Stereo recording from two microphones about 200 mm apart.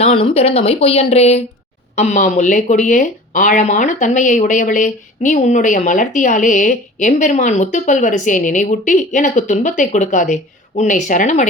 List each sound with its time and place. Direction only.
0.0 s speech: 25° left (ahead or behind)